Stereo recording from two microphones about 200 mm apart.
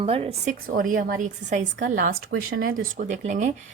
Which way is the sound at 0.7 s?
45° right (ahead or behind).